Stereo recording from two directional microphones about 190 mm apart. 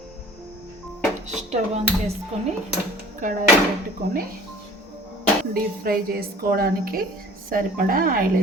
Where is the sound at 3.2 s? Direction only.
45° right (ahead or behind).